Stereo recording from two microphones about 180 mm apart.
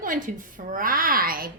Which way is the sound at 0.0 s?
50° right (ahead or behind).